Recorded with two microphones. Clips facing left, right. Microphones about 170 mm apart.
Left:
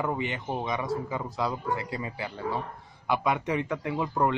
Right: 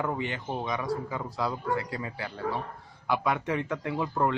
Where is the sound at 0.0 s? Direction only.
10° left (ahead or behind).